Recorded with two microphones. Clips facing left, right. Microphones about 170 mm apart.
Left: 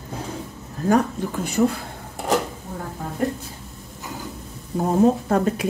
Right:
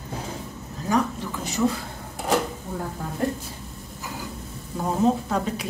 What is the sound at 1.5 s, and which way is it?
Speech, 55° left (ahead or behind).